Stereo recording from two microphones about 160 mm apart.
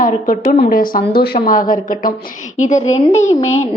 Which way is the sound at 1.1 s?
75° left (ahead or behind).